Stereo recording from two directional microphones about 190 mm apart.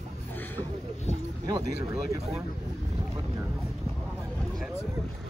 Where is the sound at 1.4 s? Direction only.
20° right (ahead or behind).